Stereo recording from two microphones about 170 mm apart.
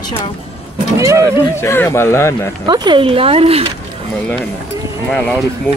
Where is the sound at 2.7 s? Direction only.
30° right (ahead or behind).